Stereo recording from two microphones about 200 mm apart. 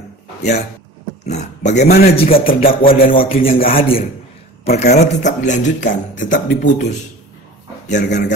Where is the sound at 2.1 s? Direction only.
30° left (ahead or behind).